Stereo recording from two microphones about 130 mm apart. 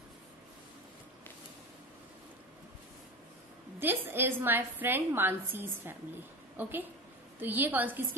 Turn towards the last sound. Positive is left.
turn(degrees=-15)  # may be behind; listen again after turning